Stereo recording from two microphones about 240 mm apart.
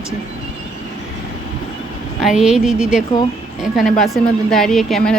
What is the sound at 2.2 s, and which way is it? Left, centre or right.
Speech, centre.